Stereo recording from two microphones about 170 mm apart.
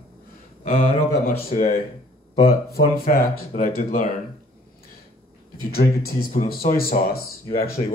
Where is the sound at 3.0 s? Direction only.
55° left (ahead or behind).